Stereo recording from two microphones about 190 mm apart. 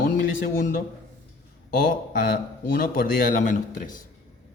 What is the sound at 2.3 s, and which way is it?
A man's voice, 55° left (ahead or behind).